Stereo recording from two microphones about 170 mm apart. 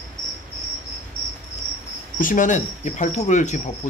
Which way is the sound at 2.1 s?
50° left (ahead or behind).